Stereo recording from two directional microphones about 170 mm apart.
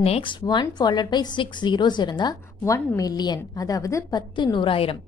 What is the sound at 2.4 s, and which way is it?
A woman's voice, 15° left (ahead or behind).